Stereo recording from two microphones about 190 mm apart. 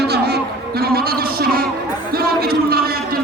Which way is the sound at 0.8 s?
55° right (ahead or behind).